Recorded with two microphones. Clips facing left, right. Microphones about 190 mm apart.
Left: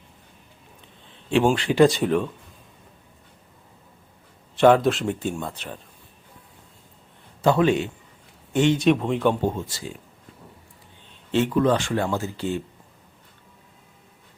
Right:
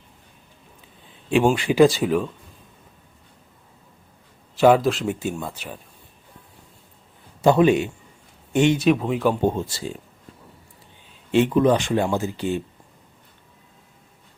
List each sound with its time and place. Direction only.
1.3 s speech: 10° right (ahead or behind)
4.5 s speech: 5° right (ahead or behind)
7.4 s speech: 15° right (ahead or behind)
8.8 s speech: 5° right (ahead or behind)
11.1 s speech: 15° right (ahead or behind)